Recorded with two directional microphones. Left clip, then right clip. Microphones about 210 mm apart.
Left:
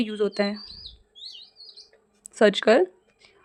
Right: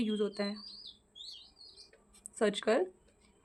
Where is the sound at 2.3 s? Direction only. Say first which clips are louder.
Left 12 dB; 25° left (ahead or behind).